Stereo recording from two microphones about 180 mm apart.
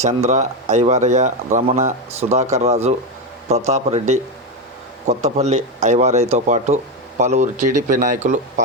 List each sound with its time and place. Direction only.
0.0 s speech: 40° right (ahead or behind)
5.2 s speech: 40° right (ahead or behind)